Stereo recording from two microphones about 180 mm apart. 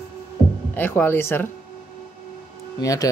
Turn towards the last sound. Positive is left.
turn(degrees=20)  # may be behind; listen again after turning